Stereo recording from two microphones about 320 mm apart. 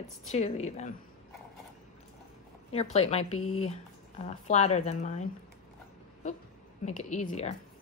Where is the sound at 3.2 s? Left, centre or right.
Left.